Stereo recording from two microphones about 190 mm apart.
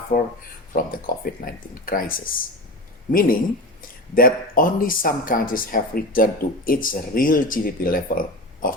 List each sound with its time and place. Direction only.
0.1 s speech: 45° left (ahead or behind)